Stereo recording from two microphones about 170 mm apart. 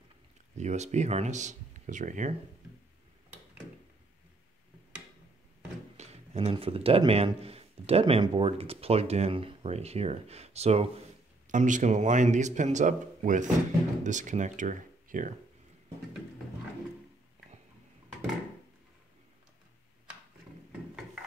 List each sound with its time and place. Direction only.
0.6 s speech: 40° right (ahead or behind)
5.9 s speech: 35° right (ahead or behind)